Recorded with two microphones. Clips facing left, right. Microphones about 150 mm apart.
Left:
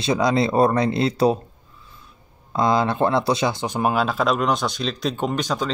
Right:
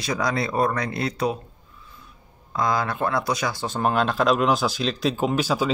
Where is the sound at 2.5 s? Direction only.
25° left (ahead or behind).